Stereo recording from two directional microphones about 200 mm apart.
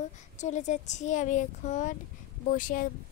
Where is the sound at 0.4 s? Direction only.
35° left (ahead or behind).